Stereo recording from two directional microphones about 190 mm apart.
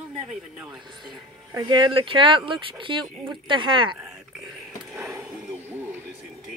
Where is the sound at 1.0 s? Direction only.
20° right (ahead or behind).